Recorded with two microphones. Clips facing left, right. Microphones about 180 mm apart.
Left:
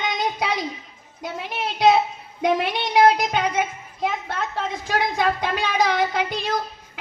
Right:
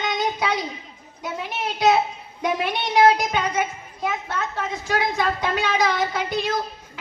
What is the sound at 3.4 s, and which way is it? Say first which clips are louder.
A woman's voice: left 1 dB; 45° right (ahead or behind).